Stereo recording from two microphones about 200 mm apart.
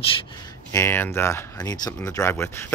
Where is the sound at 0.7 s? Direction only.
10° left (ahead or behind).